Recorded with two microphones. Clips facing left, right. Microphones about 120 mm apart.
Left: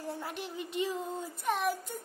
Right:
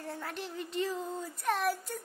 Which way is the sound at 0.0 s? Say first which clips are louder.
Left 2 dB; 25° left (ahead or behind).